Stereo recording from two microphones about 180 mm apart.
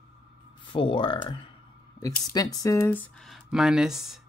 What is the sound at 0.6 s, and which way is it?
Speech, 30° left (ahead or behind).